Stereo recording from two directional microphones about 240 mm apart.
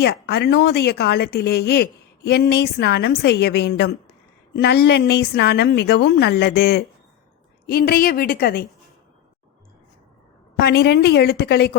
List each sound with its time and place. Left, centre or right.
0.0 s a woman's voice: left
10.6 s a woman's voice: left